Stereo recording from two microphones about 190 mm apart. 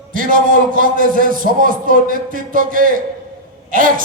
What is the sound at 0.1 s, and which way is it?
A man's voice, 45° right (ahead or behind).